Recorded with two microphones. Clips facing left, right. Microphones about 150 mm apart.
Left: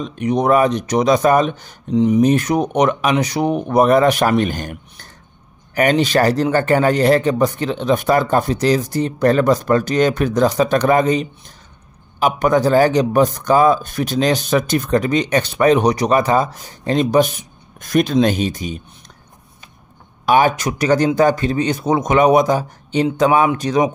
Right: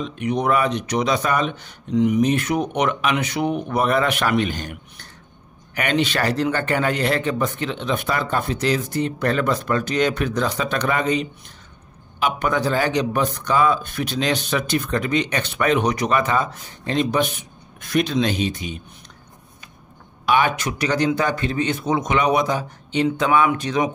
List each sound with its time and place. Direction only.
0.0 s a man's voice: 40° left (ahead or behind)
20.2 s a man's voice: 40° left (ahead or behind)